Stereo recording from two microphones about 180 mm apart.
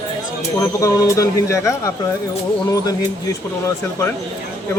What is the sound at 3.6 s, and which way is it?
Speech, 15° left (ahead or behind).